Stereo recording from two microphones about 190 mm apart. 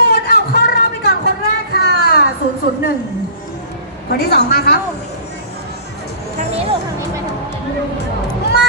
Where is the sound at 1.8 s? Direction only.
60° left (ahead or behind).